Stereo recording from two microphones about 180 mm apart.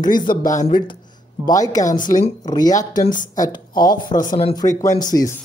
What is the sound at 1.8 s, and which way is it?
Speech, 45° left (ahead or behind).